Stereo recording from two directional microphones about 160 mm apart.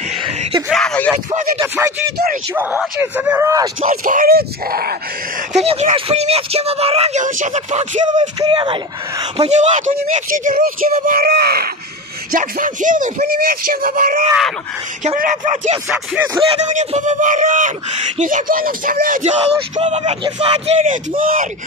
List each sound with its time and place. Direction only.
0.7 s a sound: 5° left (ahead or behind)
1.6 s speech: 15° right (ahead or behind)
3.9 s speech: 60° right (ahead or behind)
5.5 s speech: 45° right (ahead or behind)
7.2 s a man's voice: 50° right (ahead or behind)
8.2 s speech: 30° right (ahead or behind)
9.4 s speech: 45° right (ahead or behind); by 11.7 s 75° right (ahead or behind)
12.3 s speech: 60° right (ahead or behind)
13.2 s a man's voice: 65° right (ahead or behind)
19.8 s a man's voice: 40° right (ahead or behind)
21.2 s speech: 60° right (ahead or behind)